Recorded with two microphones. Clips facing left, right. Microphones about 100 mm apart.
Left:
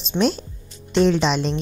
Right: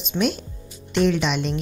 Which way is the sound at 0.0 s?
30° left (ahead or behind).